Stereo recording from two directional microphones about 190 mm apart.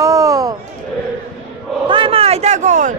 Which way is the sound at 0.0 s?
15° right (ahead or behind).